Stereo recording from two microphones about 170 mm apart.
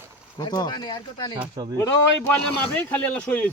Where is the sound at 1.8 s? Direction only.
15° left (ahead or behind).